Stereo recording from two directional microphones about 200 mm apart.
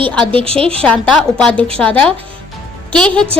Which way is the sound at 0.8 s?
5° left (ahead or behind).